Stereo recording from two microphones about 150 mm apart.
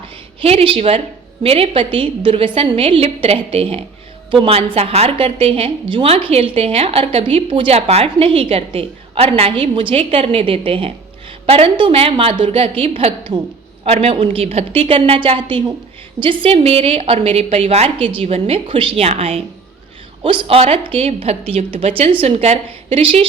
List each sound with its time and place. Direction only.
0.4 s a woman's voice: 40° right (ahead or behind)